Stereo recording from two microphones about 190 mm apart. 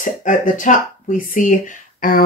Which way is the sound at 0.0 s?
45° left (ahead or behind).